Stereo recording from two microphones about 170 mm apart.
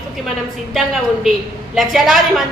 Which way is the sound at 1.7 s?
Centre (ahead or behind).